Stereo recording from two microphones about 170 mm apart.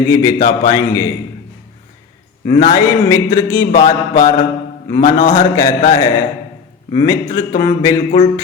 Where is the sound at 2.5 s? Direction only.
25° left (ahead or behind).